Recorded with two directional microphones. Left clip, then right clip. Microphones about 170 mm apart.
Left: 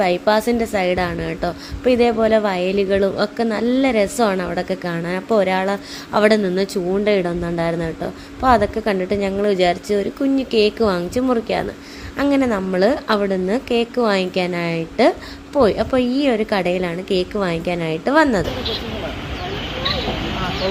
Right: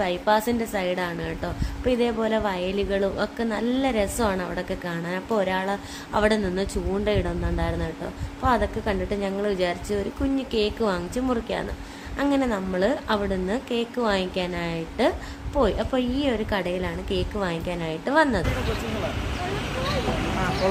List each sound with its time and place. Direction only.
0.0 s a woman's voice: 20° left (ahead or behind)